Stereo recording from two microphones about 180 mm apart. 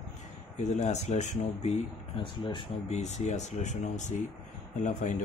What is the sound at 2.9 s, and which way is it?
Speech, 40° left (ahead or behind).